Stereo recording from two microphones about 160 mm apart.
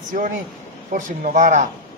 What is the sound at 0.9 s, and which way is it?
Speech, 50° right (ahead or behind).